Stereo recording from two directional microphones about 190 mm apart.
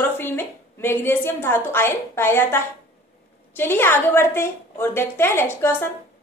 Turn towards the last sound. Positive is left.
turn(degrees=15)  # may be behind; listen again after turning